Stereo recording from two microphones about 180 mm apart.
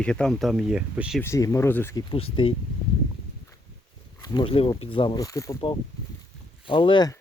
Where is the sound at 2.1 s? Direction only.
30° left (ahead or behind).